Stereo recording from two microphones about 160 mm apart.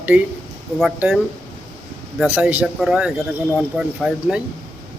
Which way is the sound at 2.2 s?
10° right (ahead or behind).